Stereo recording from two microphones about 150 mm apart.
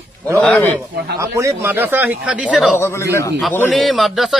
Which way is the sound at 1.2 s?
20° right (ahead or behind).